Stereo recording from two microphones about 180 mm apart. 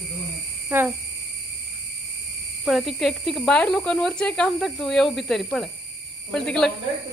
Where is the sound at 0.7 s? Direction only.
10° right (ahead or behind).